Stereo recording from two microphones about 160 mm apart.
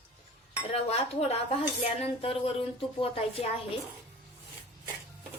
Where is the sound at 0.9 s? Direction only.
40° left (ahead or behind).